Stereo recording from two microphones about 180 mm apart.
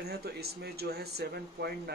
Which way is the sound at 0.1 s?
60° right (ahead or behind).